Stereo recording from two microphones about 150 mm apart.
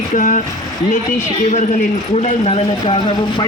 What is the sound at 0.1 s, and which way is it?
Speech, 55° left (ahead or behind).